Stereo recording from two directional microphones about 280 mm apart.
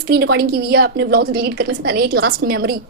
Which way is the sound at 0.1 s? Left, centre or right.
Right.